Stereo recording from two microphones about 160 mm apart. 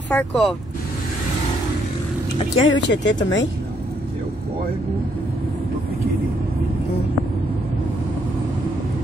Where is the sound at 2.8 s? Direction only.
90° left.